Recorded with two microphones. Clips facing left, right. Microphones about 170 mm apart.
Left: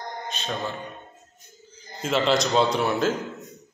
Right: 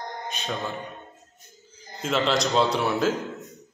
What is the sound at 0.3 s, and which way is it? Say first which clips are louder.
Speech: even; 15° right (ahead or behind).